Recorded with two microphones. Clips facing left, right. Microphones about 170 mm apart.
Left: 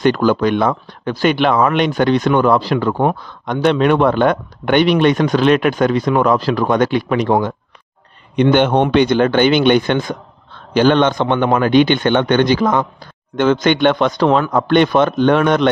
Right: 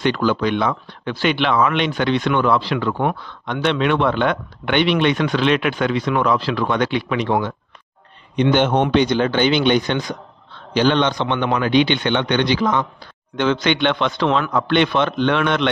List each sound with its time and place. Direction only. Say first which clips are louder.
0.0 s speech: left 5 dB; 45° left (ahead or behind)
8.4 s speech: left 4 dB; 60° left (ahead or behind)